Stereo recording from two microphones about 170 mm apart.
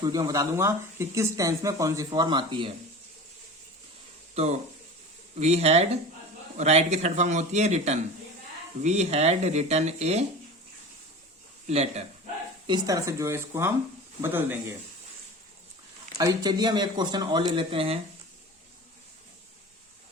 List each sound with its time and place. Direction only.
0.0 s speech: 20° right (ahead or behind)
4.4 s speech: 35° right (ahead or behind)
11.7 s speech: 40° right (ahead or behind)
12.6 s speech: 20° right (ahead or behind)
16.1 s speech: 20° right (ahead or behind)